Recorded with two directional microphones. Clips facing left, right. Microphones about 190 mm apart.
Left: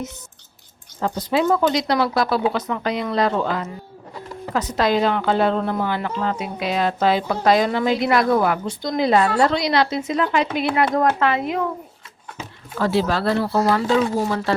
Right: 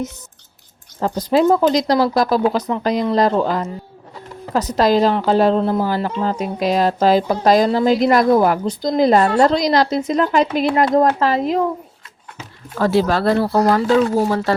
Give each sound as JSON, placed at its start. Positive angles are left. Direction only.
{"t": 0.9, "sound": "a woman's voice", "side_deg": -40}
{"t": 12.8, "sound": "speech", "side_deg": -45}